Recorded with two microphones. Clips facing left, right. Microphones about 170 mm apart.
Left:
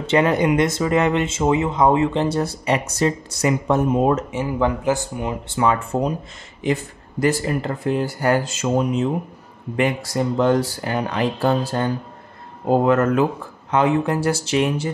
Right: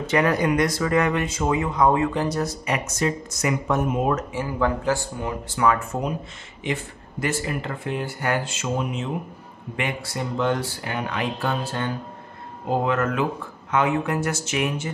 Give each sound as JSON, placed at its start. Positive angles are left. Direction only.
{"t": 0.0, "sound": "speech", "side_deg": 25}